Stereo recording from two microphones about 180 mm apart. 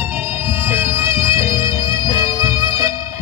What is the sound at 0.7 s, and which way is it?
Music, 15° right (ahead or behind).